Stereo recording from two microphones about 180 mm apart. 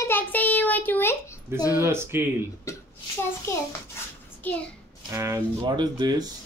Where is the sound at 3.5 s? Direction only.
15° left (ahead or behind).